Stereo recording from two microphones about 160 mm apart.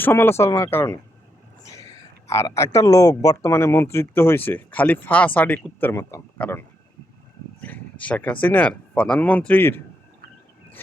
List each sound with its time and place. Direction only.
0.0 s speech: 15° left (ahead or behind)
7.6 s speech: 10° left (ahead or behind)